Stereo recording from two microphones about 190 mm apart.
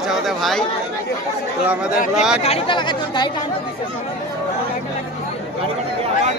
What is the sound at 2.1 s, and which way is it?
Speech, 5° right (ahead or behind).